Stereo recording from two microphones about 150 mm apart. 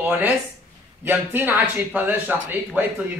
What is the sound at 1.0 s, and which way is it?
Speech, 15° right (ahead or behind).